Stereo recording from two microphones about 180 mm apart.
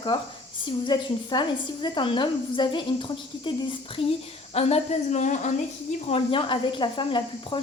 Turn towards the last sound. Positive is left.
turn(degrees=25)  # may be behind; listen again after turning